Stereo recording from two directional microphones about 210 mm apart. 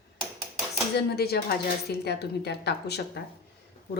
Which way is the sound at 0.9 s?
50° left (ahead or behind).